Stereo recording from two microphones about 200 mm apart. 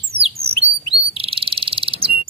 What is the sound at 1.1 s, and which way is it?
Bird vocalization, 30° right (ahead or behind).